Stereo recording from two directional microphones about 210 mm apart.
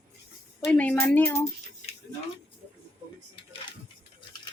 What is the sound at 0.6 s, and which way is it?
Speech, 5° left (ahead or behind).